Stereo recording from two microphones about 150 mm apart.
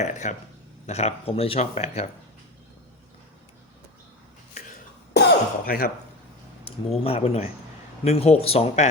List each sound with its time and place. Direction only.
0.0 s speech: 55° left (ahead or behind)
4.5 s a sound: 65° left (ahead or behind)
5.6 s speech: 80° left
6.7 s speech: 40° left (ahead or behind)